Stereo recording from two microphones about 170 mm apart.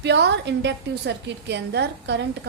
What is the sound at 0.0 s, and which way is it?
A woman's voice, 85° right.